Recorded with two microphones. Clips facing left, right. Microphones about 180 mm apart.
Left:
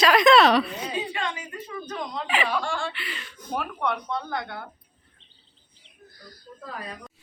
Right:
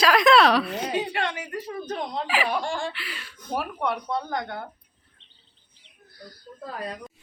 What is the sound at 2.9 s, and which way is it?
A woman's voice, centre (ahead or behind).